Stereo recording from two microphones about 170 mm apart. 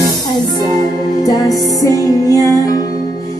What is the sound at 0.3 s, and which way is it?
Music, 25° left (ahead or behind).